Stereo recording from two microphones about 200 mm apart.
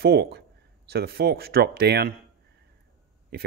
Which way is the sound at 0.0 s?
55° right (ahead or behind).